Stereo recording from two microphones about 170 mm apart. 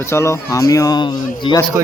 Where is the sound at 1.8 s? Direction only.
15° right (ahead or behind).